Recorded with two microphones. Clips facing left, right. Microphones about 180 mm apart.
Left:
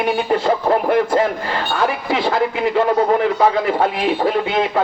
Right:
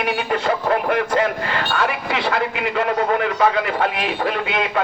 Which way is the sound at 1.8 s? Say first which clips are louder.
Left 5 dB; 35° left (ahead or behind).